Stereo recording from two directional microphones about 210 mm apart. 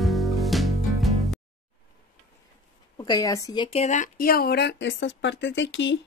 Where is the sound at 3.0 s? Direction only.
20° left (ahead or behind).